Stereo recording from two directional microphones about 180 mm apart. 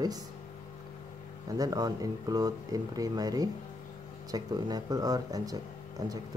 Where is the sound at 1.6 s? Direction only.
20° right (ahead or behind).